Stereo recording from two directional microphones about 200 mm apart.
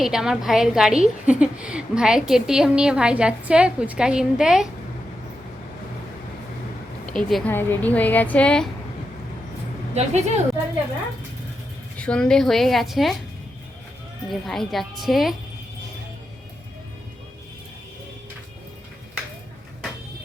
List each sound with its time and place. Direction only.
0.0 s a woman's voice: centre (ahead or behind)
7.0 s a woman's voice: 5° left (ahead or behind)
9.9 s a woman's voice: 35° right (ahead or behind)
11.9 s a woman's voice: 5° left (ahead or behind)
14.3 s a woman's voice: centre (ahead or behind)